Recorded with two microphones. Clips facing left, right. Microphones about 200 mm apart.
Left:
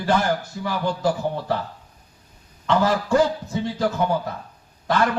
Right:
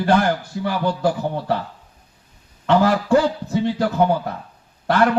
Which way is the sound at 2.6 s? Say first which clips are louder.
Right 4 dB; 60° right (ahead or behind).